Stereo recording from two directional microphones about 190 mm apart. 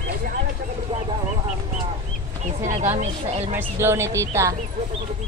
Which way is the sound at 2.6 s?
45° right (ahead or behind).